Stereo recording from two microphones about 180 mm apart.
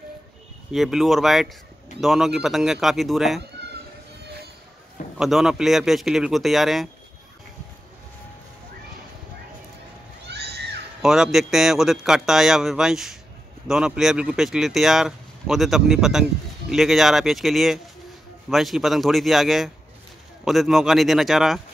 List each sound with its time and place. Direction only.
0.7 s speech: centre (ahead or behind)
5.1 s speech: centre (ahead or behind)
10.2 s a sound: 65° right (ahead or behind)
11.0 s speech: centre (ahead or behind)